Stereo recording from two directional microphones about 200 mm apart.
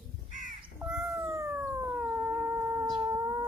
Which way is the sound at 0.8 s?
10° right (ahead or behind).